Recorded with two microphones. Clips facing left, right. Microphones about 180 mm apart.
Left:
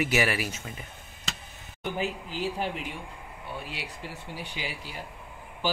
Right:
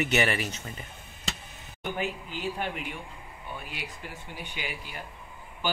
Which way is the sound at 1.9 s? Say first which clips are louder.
Left 3 dB; 35° left (ahead or behind).